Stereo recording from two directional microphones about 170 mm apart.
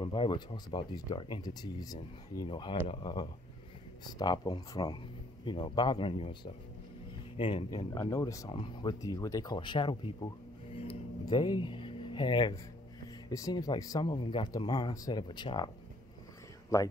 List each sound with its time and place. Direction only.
0.0 s speech: 30° left (ahead or behind)
16.7 s speech: 20° left (ahead or behind)